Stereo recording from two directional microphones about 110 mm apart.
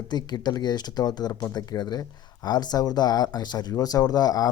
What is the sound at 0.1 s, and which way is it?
Speech, 40° left (ahead or behind).